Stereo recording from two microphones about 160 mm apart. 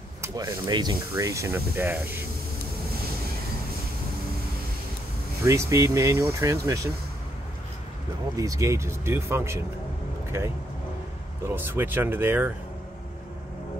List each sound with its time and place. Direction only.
0.2 s speech: 20° right (ahead or behind)
5.4 s speech: 20° right (ahead or behind)
8.4 s speech: 20° right (ahead or behind)
11.4 s speech: 15° right (ahead or behind)